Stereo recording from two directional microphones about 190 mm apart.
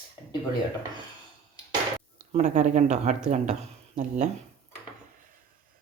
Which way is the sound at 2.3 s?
35° right (ahead or behind).